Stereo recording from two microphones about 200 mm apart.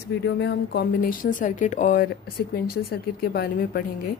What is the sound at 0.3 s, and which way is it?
A woman's voice, 60° left (ahead or behind).